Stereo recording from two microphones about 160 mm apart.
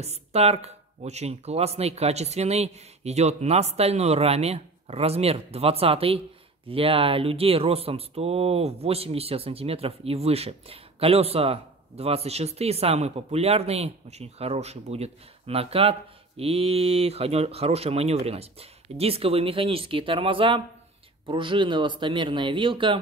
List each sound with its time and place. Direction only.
0.0 s speech: 40° right (ahead or behind)